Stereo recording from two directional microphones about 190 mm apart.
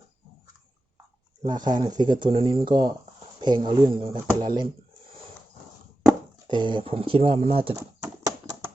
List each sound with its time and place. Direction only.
1.4 s speech: 20° right (ahead or behind)
6.5 s speech: 25° right (ahead or behind)
7.8 s horse: 15° right (ahead or behind)